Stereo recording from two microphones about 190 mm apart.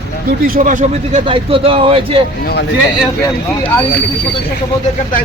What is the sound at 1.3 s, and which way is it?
Speech, 30° right (ahead or behind).